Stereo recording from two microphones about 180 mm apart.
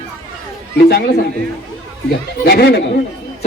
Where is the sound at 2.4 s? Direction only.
60° left (ahead or behind).